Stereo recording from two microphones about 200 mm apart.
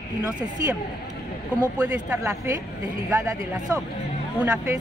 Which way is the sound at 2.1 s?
15° right (ahead or behind).